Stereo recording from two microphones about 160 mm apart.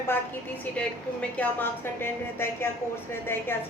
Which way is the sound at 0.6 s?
10° left (ahead or behind).